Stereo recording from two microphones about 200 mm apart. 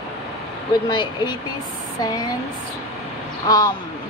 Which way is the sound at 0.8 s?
20° left (ahead or behind).